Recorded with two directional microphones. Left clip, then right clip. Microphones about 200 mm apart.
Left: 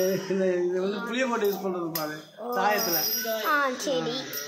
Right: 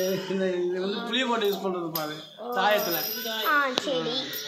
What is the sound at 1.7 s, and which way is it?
Speech, 20° right (ahead or behind).